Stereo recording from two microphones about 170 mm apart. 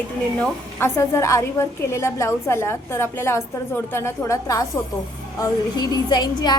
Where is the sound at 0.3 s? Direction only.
10° left (ahead or behind).